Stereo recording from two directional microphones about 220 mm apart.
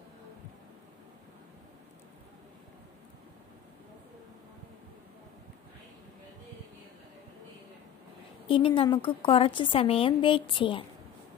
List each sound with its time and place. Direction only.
8.5 s a woman's voice: 25° left (ahead or behind)